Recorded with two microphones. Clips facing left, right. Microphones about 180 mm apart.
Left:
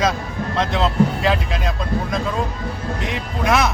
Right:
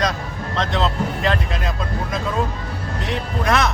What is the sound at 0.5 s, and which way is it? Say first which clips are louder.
Speech: left 3 dB; centre (ahead or behind).